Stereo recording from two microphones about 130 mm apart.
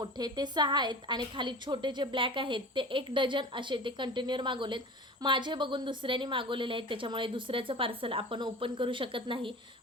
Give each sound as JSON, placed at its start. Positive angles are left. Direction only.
{"t": 0.0, "sound": "a woman's voice", "side_deg": -30}